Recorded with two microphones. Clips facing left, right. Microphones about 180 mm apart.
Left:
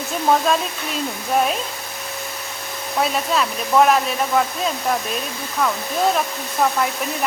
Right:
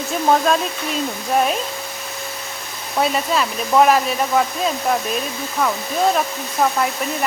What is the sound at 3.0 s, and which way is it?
Speech, centre (ahead or behind).